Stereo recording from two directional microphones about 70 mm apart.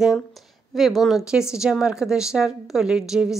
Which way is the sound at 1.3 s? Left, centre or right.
Centre.